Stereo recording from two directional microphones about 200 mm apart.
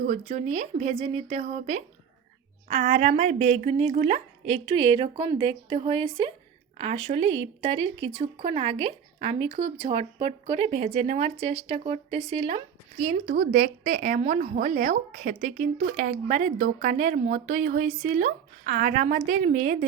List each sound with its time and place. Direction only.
0.1 s a woman's voice: 35° right (ahead or behind)